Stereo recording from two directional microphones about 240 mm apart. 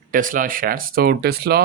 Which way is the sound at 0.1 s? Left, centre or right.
Right.